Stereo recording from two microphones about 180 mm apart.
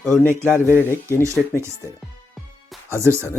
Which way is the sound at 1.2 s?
15° right (ahead or behind).